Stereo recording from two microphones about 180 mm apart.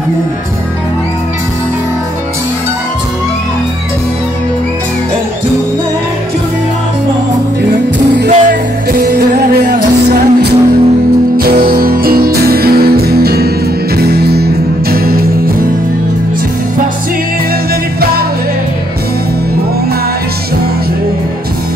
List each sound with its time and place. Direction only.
8.3 s music: 50° right (ahead or behind)